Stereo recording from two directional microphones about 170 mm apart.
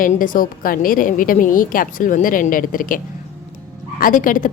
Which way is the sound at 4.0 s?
55° left (ahead or behind).